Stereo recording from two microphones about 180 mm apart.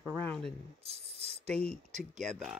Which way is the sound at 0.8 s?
35° right (ahead or behind).